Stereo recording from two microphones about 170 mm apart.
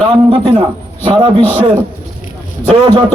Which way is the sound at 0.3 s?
35° right (ahead or behind).